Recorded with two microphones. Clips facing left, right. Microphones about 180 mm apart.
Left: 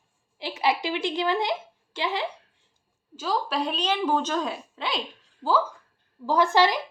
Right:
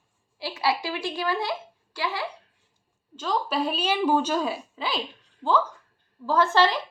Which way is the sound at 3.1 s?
5° left (ahead or behind).